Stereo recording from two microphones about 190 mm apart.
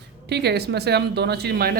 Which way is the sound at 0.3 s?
60° right (ahead or behind).